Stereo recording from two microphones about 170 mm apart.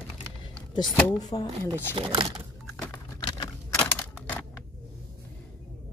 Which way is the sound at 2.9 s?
20° left (ahead or behind).